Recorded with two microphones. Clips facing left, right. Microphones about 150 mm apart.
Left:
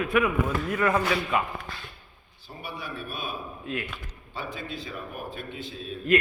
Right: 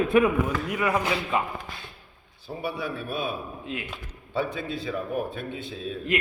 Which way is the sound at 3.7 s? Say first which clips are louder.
Left 2 dB; 20° right (ahead or behind).